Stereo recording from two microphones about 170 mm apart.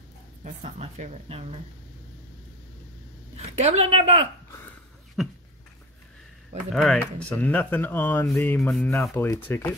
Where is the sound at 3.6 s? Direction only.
40° right (ahead or behind).